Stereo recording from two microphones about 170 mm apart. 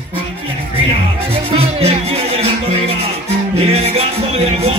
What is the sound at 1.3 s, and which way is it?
Music, 35° right (ahead or behind).